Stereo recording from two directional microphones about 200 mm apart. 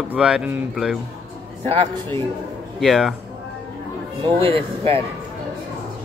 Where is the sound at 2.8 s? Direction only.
Centre (ahead or behind).